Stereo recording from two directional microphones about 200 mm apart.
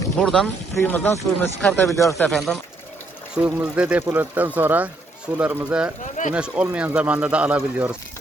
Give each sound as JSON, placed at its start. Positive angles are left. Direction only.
{"t": 0.2, "sound": "speech", "side_deg": 0}
{"t": 6.0, "sound": "speech", "side_deg": 40}
{"t": 6.3, "sound": "speech", "side_deg": -5}